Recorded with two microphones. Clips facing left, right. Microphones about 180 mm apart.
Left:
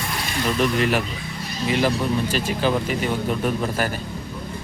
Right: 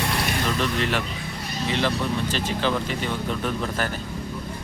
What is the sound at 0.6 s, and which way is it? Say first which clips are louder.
Speech: left 4 dB; 10° left (ahead or behind).